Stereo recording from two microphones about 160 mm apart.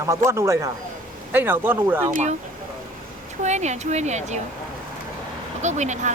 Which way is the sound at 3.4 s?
45° right (ahead or behind).